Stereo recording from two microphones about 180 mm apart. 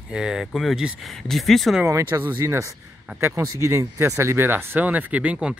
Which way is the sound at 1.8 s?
15° right (ahead or behind).